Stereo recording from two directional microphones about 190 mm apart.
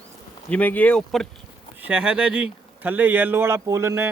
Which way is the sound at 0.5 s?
10° left (ahead or behind).